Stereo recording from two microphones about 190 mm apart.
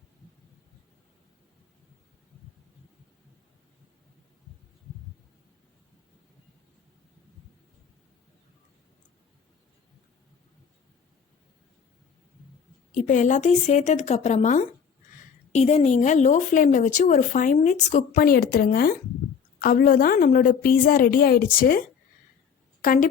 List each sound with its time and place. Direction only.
12.9 s a woman's voice: 40° left (ahead or behind)
22.8 s a woman's voice: 45° left (ahead or behind)